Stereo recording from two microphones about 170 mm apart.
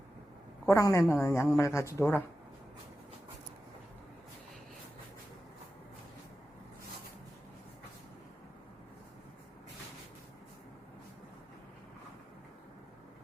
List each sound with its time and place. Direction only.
0.7 s speech: 15° left (ahead or behind)